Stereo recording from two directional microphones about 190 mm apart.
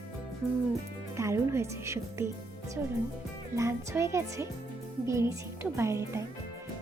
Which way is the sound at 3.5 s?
15° right (ahead or behind).